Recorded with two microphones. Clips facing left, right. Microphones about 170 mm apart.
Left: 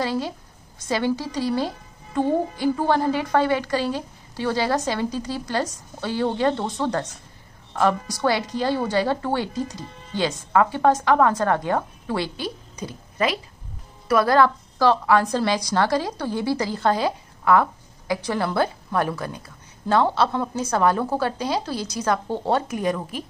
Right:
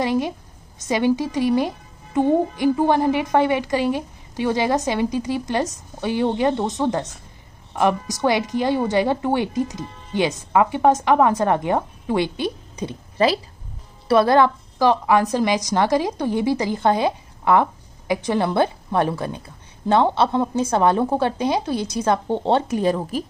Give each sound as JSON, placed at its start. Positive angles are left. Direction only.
{"t": 0.0, "sound": "a woman's voice", "side_deg": -15}
{"t": 22.7, "sound": "a woman's voice", "side_deg": -35}